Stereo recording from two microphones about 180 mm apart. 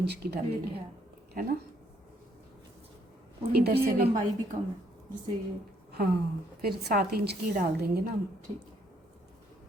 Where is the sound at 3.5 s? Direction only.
60° right (ahead or behind).